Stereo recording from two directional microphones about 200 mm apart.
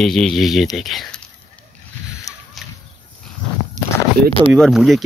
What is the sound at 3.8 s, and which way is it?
Walk, 35° right (ahead or behind).